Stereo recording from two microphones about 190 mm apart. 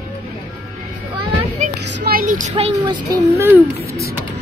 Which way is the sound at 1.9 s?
50° right (ahead or behind).